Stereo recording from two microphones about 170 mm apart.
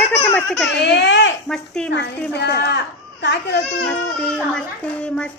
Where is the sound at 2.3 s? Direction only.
80° left.